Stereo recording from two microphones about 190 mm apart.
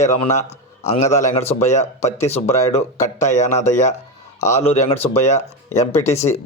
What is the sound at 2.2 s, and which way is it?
Speech, 15° left (ahead or behind).